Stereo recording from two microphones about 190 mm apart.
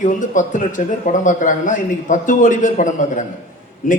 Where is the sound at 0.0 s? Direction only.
45° left (ahead or behind).